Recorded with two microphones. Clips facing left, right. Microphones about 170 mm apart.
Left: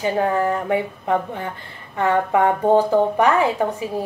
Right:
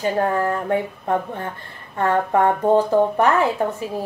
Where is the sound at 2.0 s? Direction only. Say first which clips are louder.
Even; 15° left (ahead or behind).